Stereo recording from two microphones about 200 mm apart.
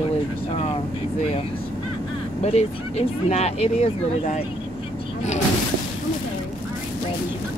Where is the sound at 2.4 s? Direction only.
35° left (ahead or behind).